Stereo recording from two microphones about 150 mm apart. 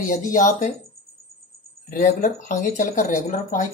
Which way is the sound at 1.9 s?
60° left (ahead or behind).